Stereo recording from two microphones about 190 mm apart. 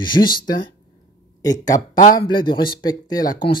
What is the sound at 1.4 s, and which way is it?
Speech, 20° left (ahead or behind).